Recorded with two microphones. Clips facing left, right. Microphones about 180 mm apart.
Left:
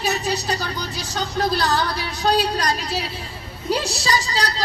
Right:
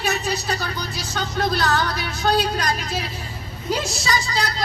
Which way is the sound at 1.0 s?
35° left (ahead or behind).